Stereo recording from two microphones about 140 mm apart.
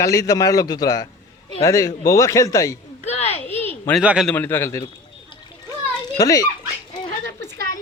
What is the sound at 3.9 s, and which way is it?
Speech, 5° right (ahead or behind).